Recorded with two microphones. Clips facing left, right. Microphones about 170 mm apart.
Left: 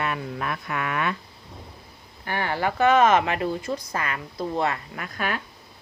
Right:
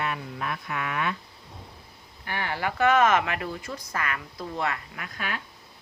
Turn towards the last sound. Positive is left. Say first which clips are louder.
# left 5 dB
turn(degrees=45)  # may be behind; listen again after turning